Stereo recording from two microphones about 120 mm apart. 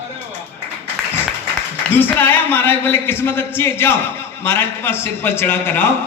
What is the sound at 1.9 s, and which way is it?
A man's voice, 15° left (ahead or behind).